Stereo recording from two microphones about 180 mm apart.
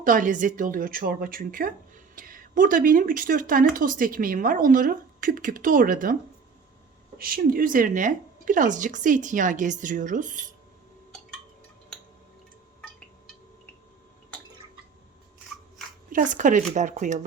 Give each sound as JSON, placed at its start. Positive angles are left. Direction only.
{"t": 0.0, "sound": "speech", "side_deg": -45}
{"t": 7.2, "sound": "speech", "side_deg": -55}
{"t": 16.0, "sound": "speech", "side_deg": -45}